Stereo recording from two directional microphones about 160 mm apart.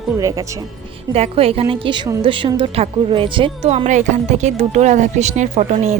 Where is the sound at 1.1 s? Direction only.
40° right (ahead or behind).